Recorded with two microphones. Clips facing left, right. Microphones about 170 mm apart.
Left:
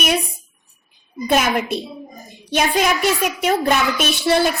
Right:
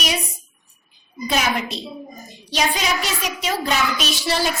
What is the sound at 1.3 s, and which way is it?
A woman's voice, 50° left (ahead or behind).